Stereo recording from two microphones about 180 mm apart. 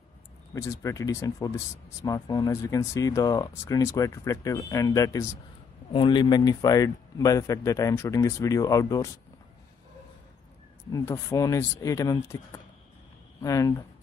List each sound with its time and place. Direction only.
0.6 s speech: 15° left (ahead or behind)
10.9 s speech: 15° left (ahead or behind)
13.4 s speech: 20° left (ahead or behind)